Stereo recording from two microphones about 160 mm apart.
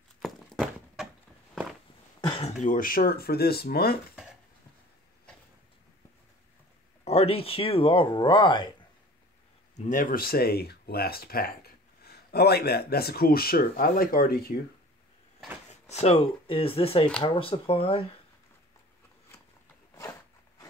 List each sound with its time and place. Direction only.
0.2 s a sound: centre (ahead or behind)
2.3 s speech: 45° left (ahead or behind); by 4.0 s 75° left (ahead or behind)
7.1 s speech: 40° left (ahead or behind)
9.8 s speech: 55° left (ahead or behind)
15.7 s speech: 45° left (ahead or behind)
20.0 s a sound: 20° left (ahead or behind)